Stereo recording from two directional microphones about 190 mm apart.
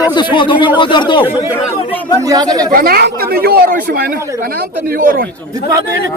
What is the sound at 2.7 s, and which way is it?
Speech, 55° right (ahead or behind).